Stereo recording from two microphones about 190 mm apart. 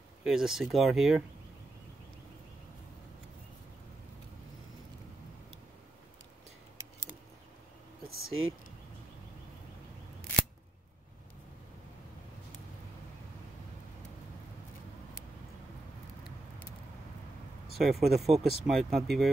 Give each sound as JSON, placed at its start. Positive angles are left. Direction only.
{"t": 0.2, "sound": "speech", "side_deg": 0}
{"t": 8.3, "sound": "speech", "side_deg": -90}
{"t": 17.8, "sound": "speech", "side_deg": 0}